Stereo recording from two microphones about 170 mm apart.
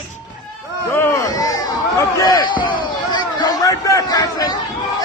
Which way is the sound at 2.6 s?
25° left (ahead or behind).